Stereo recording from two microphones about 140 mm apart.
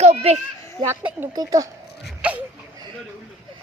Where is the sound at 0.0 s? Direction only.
50° right (ahead or behind).